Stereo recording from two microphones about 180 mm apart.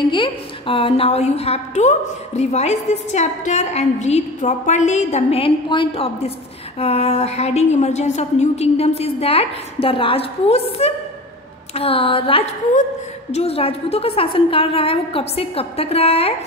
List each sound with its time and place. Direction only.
0.0 s a woman's voice: 25° left (ahead or behind)